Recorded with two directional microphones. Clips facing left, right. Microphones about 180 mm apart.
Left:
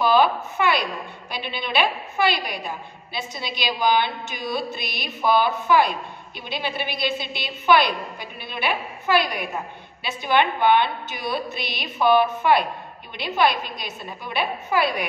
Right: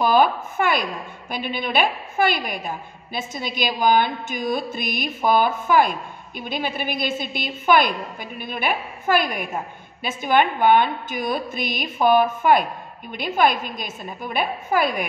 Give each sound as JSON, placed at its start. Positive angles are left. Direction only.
{"t": 0.0, "sound": "a woman's voice", "side_deg": -50}